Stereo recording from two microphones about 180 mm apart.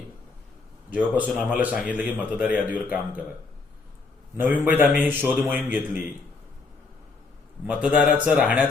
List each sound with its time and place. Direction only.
0.9 s speech: 10° right (ahead or behind)
4.4 s speech: 10° right (ahead or behind)
7.7 s speech: 5° right (ahead or behind)